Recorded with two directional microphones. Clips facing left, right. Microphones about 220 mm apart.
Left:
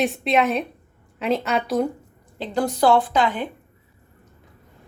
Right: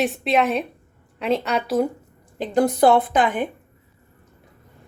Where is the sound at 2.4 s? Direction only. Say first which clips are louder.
Right 4 dB; 15° right (ahead or behind).